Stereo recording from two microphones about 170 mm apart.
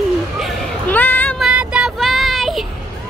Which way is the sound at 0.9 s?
10° left (ahead or behind).